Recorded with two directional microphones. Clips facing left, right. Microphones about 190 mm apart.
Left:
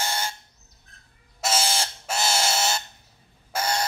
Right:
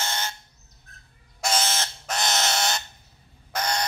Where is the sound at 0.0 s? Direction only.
10° left (ahead or behind).